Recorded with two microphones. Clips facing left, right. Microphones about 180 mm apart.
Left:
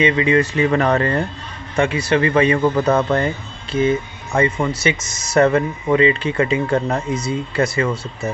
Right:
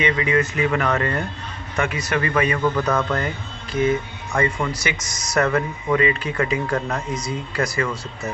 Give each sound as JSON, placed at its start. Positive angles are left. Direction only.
{"t": 0.0, "sound": "speech", "side_deg": 25}